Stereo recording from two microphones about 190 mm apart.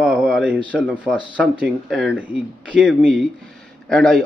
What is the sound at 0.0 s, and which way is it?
Speech, centre (ahead or behind).